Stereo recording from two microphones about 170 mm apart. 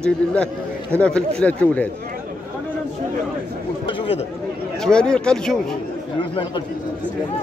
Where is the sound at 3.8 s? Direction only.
30° left (ahead or behind).